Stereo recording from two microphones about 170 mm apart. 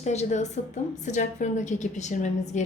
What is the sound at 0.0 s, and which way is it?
A woman's voice, 40° left (ahead or behind).